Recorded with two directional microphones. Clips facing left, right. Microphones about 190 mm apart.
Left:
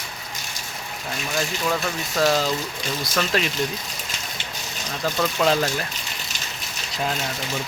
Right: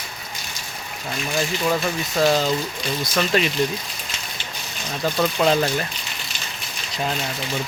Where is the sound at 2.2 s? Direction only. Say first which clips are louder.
Right 2 dB; centre (ahead or behind).